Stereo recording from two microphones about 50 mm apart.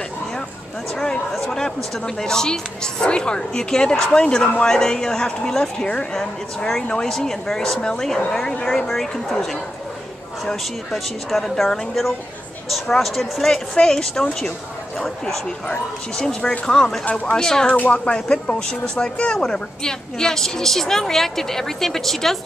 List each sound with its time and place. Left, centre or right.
0.9 s speech: centre
6.9 s a woman's voice: centre
13.5 s speech: centre
17.0 s speech: left
17.3 s speech: centre
17.7 s speech: left; by 22.4 s centre